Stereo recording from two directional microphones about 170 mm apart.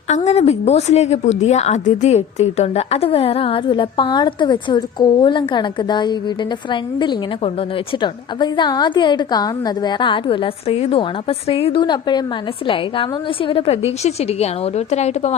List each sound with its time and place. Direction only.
0.3 s a woman's voice: 40° left (ahead or behind)